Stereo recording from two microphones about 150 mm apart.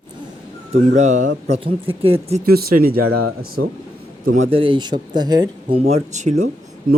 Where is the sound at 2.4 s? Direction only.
85° right.